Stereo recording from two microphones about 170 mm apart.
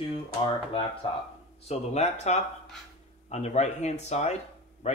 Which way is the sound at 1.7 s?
40° left (ahead or behind).